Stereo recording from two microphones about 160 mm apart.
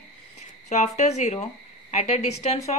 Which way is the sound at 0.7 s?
45° left (ahead or behind).